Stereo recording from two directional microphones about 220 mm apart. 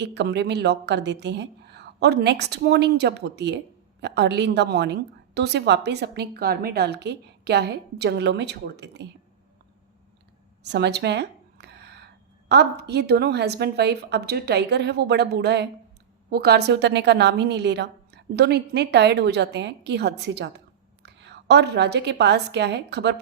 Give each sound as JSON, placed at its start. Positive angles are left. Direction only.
{"t": 0.0, "sound": "a woman's voice", "side_deg": -50}
{"t": 10.6, "sound": "a sound", "side_deg": -50}
{"t": 12.5, "sound": "a woman's voice", "side_deg": -50}